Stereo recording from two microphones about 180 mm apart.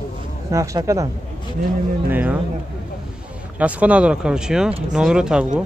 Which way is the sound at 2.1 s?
10° right (ahead or behind).